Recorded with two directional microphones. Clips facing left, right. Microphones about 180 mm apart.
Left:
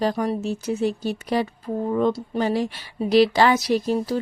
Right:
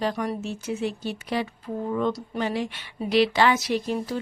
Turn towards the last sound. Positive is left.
turn(degrees=35)  # may be behind; listen again after turning